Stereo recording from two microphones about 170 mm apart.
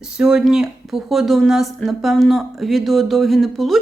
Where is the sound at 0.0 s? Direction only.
5° right (ahead or behind).